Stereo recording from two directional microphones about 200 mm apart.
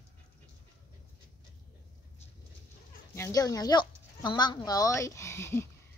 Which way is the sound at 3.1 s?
15° left (ahead or behind).